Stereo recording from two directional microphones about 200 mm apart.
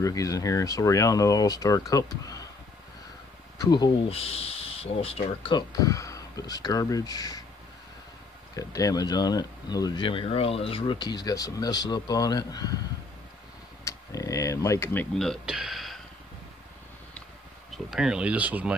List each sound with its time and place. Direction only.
0.0 s speech: 15° left (ahead or behind)
3.5 s speech: 20° left (ahead or behind)
8.5 s speech: 15° left (ahead or behind)
13.8 s speech: 15° left (ahead or behind); by 16.0 s centre (ahead or behind)
17.8 s speech: centre (ahead or behind)